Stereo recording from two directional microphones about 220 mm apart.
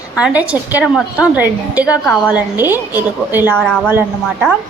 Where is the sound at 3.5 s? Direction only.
5° left (ahead or behind).